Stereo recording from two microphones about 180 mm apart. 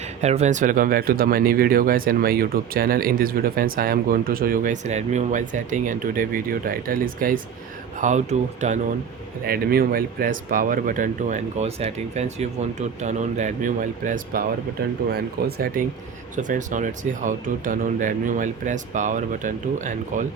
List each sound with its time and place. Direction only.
0.2 s speech: 40° right (ahead or behind)
9.4 s speech: 60° right (ahead or behind)
14.8 s speech: 60° right (ahead or behind)
16.3 s speech: 45° right (ahead or behind)